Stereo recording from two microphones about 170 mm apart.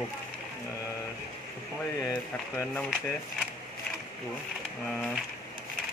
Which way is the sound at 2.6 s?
10° left (ahead or behind).